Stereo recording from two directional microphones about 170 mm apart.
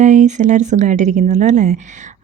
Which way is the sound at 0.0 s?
45° right (ahead or behind).